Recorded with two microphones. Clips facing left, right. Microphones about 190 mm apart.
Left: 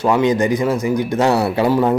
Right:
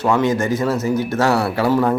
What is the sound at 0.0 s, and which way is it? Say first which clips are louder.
Speech: left 2 dB; 15° left (ahead or behind).